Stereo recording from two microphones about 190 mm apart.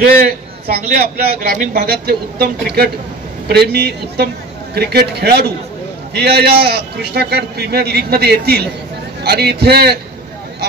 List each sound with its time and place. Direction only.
0.0 s a man's voice: 50° right (ahead or behind)